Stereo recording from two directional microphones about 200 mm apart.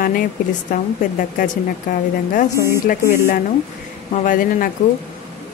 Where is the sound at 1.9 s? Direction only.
40° left (ahead or behind).